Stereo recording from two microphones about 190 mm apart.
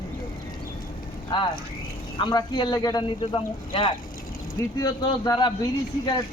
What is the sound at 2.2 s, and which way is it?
Speech, 20° left (ahead or behind).